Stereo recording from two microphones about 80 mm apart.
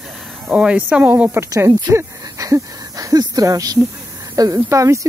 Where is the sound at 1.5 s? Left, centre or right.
Right.